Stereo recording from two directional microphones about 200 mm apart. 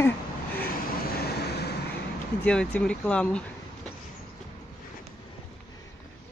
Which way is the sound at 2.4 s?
5° left (ahead or behind).